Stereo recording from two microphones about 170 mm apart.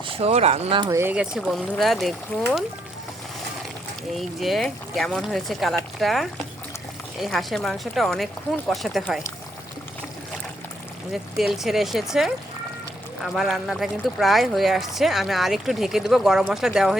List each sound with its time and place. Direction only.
0.1 s speech: 35° right (ahead or behind)
0.9 s speech: 15° right (ahead or behind)
4.1 s speech: centre (ahead or behind)
11.1 s speech: centre (ahead or behind)
13.2 s speech: centre (ahead or behind)